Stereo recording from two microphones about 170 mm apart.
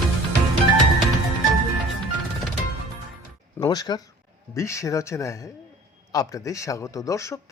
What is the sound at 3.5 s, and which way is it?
A man's voice, 20° left (ahead or behind).